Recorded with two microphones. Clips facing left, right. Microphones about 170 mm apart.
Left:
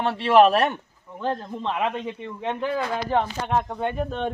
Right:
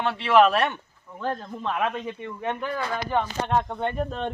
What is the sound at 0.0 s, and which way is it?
Speech, 35° left (ahead or behind).